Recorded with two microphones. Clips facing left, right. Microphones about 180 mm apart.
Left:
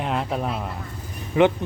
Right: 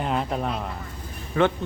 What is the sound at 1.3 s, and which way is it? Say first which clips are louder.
Speech: left 4 dB; 15° left (ahead or behind).